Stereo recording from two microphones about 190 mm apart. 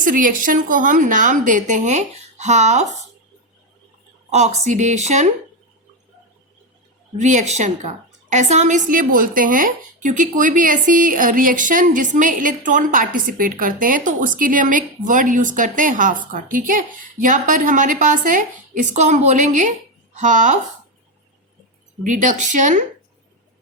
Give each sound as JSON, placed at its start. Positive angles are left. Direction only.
{"t": 0.0, "sound": "a woman's voice", "side_deg": -45}
{"t": 4.3, "sound": "a woman's voice", "side_deg": -35}
{"t": 7.2, "sound": "a woman's voice", "side_deg": -40}
{"t": 22.0, "sound": "a woman's voice", "side_deg": -40}